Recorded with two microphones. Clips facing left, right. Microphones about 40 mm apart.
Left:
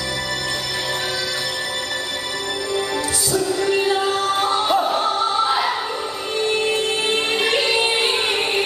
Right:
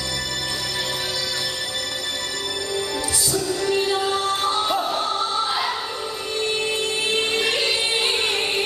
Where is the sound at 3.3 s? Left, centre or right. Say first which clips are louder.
Left 3 dB; centre.